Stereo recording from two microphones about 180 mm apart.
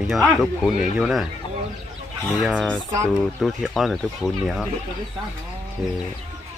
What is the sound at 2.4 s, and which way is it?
Speech, centre (ahead or behind).